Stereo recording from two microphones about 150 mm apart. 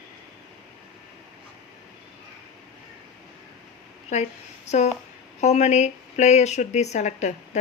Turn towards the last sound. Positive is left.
turn(degrees=50)  # may be behind; listen again after turning